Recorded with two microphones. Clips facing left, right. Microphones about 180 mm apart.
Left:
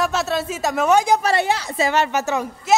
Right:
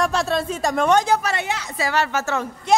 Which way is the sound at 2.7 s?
5° left (ahead or behind).